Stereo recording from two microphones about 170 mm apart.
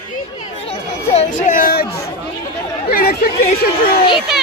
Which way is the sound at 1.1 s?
40° left (ahead or behind).